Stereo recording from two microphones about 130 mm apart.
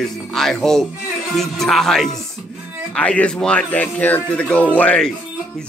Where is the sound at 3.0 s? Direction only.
10° left (ahead or behind).